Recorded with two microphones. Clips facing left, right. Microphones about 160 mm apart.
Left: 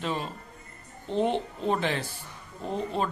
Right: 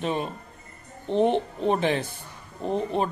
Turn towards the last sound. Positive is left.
turn(degrees=-20)  # may be behind; listen again after turning